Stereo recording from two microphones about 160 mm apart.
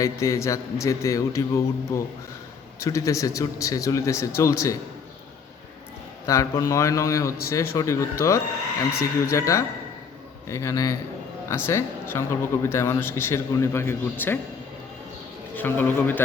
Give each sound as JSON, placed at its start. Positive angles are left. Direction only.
{"t": 0.0, "sound": "speech", "side_deg": 20}
{"t": 2.8, "sound": "speech", "side_deg": 20}
{"t": 6.2, "sound": "speech", "side_deg": 20}
{"t": 15.5, "sound": "speech", "side_deg": 10}